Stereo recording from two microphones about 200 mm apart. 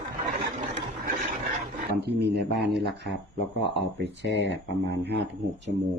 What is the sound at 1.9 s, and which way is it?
Speech, 55° right (ahead or behind).